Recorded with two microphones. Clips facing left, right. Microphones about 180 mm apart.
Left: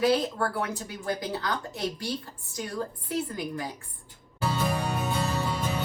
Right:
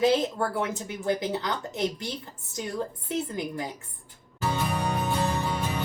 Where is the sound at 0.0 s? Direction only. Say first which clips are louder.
Right 1 dB; 20° right (ahead or behind).